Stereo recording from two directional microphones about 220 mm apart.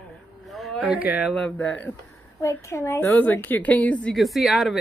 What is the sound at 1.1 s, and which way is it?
A woman's voice, centre (ahead or behind).